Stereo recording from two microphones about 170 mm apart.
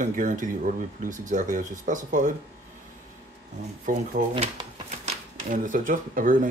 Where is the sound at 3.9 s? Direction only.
50° right (ahead or behind).